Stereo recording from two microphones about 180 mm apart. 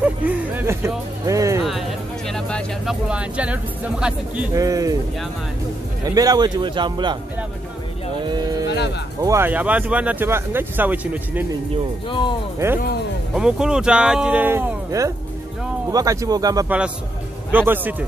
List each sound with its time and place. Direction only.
0.0 s speech: 10° right (ahead or behind)
1.6 s speech: centre (ahead or behind)
4.6 s a man's voice: 20° right (ahead or behind)
6.0 s a man's voice: 20° right (ahead or behind)
8.6 s music: 70° left (ahead or behind)
9.2 s speech: 15° right (ahead or behind)
12.1 s speech: 25° left (ahead or behind)
12.5 s a man's voice: 15° right (ahead or behind)
16.6 s speech: 5° right (ahead or behind)